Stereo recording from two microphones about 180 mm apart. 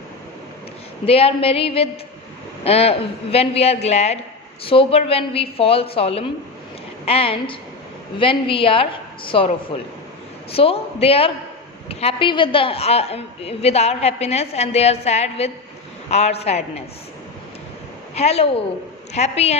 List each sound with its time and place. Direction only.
1.0 s a woman's voice: 30° left (ahead or behind)
18.1 s a woman's voice: 35° left (ahead or behind)